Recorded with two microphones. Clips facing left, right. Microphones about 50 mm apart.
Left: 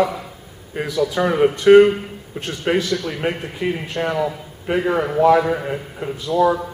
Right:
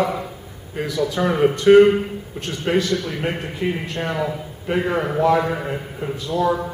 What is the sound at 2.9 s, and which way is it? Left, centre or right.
A man's voice, centre.